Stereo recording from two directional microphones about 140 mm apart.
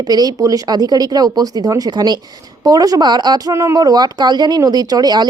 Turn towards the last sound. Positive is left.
turn(degrees=-30)  # may be behind; listen again after turning